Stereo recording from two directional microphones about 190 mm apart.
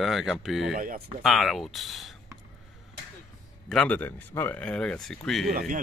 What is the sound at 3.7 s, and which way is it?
Speech, 10° left (ahead or behind).